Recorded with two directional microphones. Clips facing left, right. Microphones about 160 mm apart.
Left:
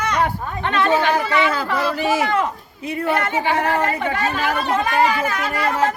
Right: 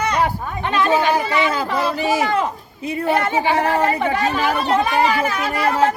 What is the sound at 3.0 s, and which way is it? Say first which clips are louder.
Speech: right 2 dB; 35° right (ahead or behind).